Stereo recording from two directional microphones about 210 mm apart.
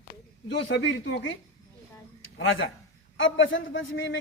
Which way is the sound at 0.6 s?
60° left (ahead or behind).